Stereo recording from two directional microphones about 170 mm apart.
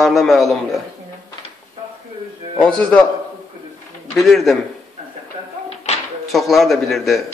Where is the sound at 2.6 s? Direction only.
5° left (ahead or behind).